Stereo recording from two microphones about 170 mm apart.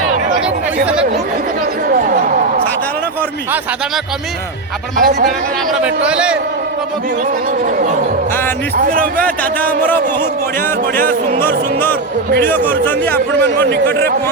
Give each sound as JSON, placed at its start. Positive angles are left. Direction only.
{"t": 4.9, "sound": "speech", "side_deg": -60}
{"t": 5.8, "sound": "a man's voice", "side_deg": -5}
{"t": 9.1, "sound": "speech", "side_deg": 10}
{"t": 10.9, "sound": "speech", "side_deg": -55}
{"t": 11.4, "sound": "speech", "side_deg": 10}